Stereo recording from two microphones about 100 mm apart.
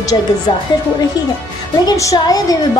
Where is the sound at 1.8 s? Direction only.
35° left (ahead or behind).